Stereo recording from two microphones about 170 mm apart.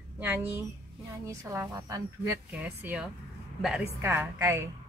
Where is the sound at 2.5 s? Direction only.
10° right (ahead or behind).